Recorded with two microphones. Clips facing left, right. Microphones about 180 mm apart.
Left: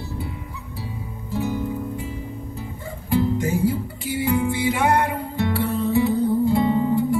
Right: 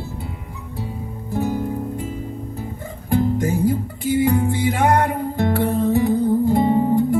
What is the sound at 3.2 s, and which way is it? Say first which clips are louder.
Music: right 3 dB; 50° right (ahead or behind).